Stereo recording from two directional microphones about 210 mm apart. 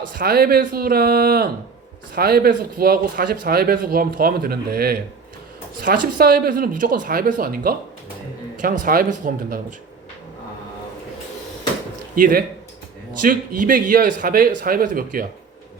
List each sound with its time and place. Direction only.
0.1 s a man's voice: 45° right (ahead or behind)
12.1 s a man's voice: 40° right (ahead or behind)